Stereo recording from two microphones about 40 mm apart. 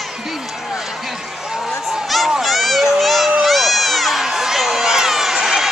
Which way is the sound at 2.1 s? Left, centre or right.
Centre.